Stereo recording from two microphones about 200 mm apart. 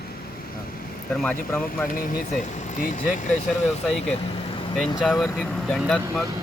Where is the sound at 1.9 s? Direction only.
45° left (ahead or behind).